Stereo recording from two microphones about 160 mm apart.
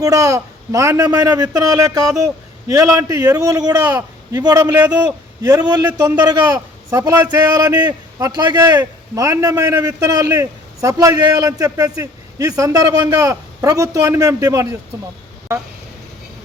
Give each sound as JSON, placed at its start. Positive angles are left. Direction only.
{"t": 0.0, "sound": "a man's voice", "side_deg": -20}